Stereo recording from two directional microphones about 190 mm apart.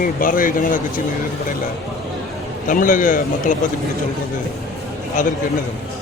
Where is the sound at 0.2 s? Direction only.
45° left (ahead or behind).